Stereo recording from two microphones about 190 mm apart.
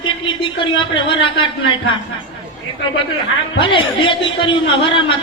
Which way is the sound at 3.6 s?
25° left (ahead or behind).